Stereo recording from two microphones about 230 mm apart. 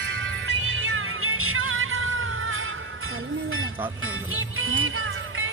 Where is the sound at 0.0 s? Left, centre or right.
Right.